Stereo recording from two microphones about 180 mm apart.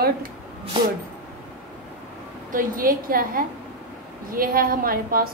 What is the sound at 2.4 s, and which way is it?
A woman's voice, 50° right (ahead or behind).